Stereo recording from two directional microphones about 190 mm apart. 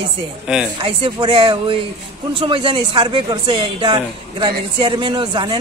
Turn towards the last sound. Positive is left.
turn(degrees=-25)  # may be behind; listen again after turning